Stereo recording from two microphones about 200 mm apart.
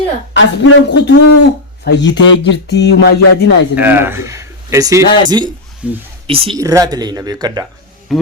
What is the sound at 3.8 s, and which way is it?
A man's voice, 10° right (ahead or behind).